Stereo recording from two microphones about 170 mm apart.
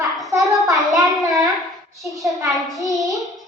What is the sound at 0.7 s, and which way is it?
Speech, centre (ahead or behind).